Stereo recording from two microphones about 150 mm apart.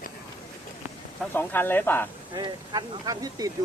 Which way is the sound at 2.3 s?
30° right (ahead or behind).